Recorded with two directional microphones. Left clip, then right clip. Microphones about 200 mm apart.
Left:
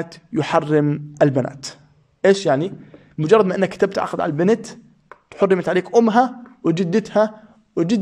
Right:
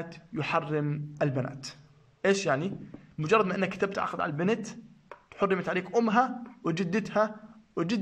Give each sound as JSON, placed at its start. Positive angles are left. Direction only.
{"t": 0.0, "sound": "a man's voice", "side_deg": 30}